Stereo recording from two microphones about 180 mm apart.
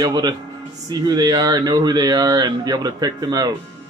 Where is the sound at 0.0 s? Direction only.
20° right (ahead or behind).